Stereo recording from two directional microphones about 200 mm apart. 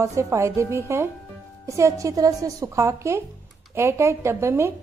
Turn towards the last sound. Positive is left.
turn(degrees=-15)  # may be behind; listen again after turning